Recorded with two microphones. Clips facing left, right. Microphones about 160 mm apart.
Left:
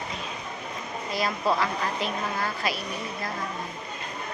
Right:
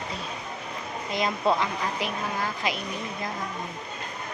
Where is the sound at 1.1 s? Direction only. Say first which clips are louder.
Right 1 dB; 20° right (ahead or behind).